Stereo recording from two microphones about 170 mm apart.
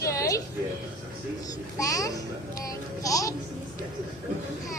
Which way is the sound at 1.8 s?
20° left (ahead or behind).